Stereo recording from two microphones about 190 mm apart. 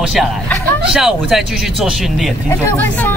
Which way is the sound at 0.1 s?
Centre (ahead or behind).